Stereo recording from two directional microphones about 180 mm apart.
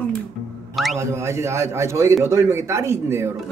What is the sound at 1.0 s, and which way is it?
A man's voice, 15° right (ahead or behind).